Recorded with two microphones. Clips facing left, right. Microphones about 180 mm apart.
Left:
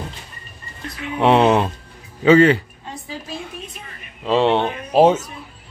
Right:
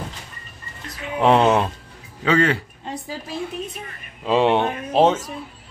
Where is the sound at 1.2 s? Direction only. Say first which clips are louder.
Left 2 dB; centre (ahead or behind).